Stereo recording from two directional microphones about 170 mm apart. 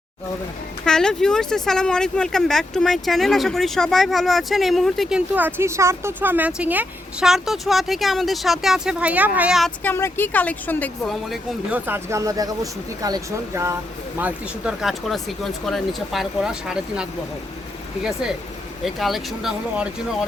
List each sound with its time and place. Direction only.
0.9 s speech: 5° left (ahead or behind)
9.8 s speech: 15° left (ahead or behind)
11.7 s speech: 15° right (ahead or behind)
18.9 s speech: centre (ahead or behind)